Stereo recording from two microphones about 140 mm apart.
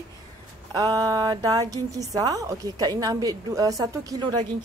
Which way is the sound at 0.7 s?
25° right (ahead or behind).